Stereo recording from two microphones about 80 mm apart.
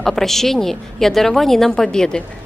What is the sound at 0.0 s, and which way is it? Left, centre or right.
A woman's voice, centre.